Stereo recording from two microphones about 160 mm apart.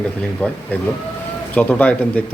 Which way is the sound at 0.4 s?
10° left (ahead or behind).